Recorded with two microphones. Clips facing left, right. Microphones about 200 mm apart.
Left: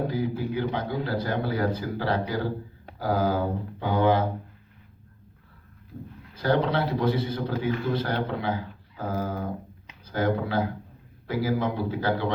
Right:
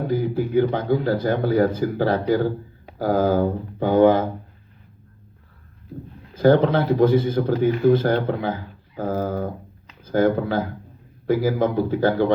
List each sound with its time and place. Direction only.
0.1 s speech: 50° right (ahead or behind)
6.3 s speech: 50° right (ahead or behind)